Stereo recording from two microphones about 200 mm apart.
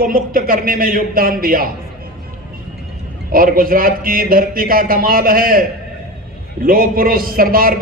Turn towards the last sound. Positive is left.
turn(degrees=-45)  # may be behind; listen again after turning